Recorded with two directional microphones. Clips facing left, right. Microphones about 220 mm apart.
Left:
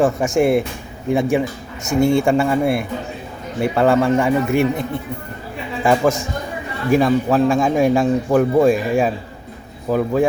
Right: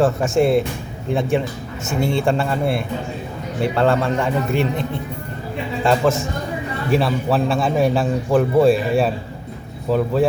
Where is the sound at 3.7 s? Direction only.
10° left (ahead or behind).